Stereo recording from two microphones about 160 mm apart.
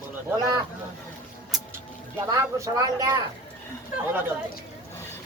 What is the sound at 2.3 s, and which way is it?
Speech, 20° right (ahead or behind).